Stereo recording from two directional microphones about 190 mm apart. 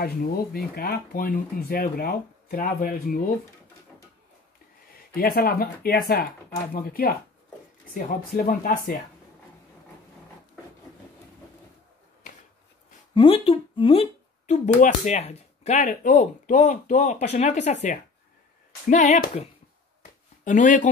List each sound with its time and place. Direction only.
0.0 s speech: 55° left (ahead or behind)
5.1 s speech: 50° left (ahead or behind)
13.1 s speech: 25° left (ahead or behind)
18.9 s speech: 40° left (ahead or behind)
20.0 s a sound: 40° left (ahead or behind)